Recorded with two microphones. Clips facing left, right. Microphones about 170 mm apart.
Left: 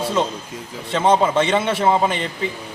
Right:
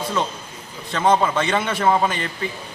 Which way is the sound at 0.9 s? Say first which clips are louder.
Left 2 dB; 25° left (ahead or behind).